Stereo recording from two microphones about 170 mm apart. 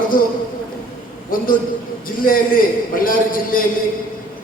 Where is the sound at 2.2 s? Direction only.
55° left (ahead or behind).